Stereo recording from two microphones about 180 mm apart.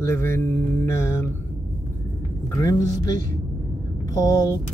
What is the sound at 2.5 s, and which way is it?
Speech, 20° left (ahead or behind).